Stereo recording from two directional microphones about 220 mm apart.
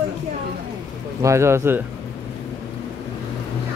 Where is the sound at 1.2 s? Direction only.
15° right (ahead or behind).